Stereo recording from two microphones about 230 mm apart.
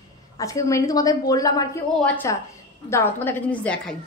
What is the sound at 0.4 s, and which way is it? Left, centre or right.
A woman's voice, centre.